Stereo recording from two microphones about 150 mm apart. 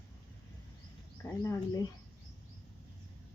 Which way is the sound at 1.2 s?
20° left (ahead or behind).